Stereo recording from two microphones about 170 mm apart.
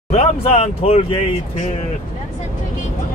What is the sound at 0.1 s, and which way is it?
Speech, 35° left (ahead or behind).